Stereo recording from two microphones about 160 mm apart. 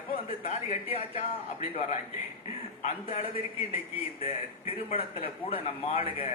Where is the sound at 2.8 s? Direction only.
45° left (ahead or behind).